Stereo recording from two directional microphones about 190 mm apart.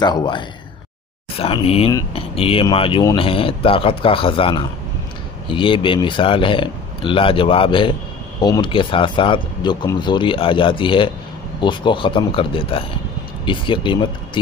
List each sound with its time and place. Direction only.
0.0 s speech: 25° left (ahead or behind)